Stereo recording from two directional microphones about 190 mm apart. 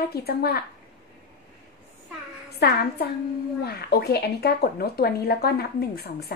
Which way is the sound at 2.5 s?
60° left (ahead or behind).